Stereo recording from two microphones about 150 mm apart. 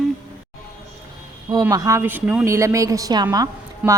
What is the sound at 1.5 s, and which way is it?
A woman's voice, 25° right (ahead or behind).